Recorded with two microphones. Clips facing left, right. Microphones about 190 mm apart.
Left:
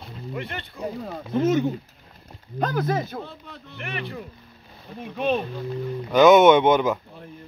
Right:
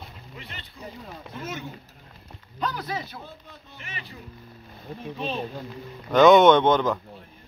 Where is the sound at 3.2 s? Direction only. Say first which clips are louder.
Left 4 dB; 70° left (ahead or behind).